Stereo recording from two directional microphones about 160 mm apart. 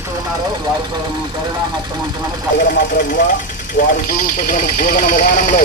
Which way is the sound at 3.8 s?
55° left (ahead or behind).